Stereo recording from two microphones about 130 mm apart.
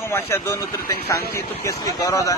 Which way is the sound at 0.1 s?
20° left (ahead or behind).